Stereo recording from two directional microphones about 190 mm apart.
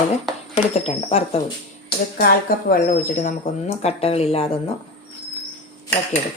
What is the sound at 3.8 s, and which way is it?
Speech, 30° left (ahead or behind).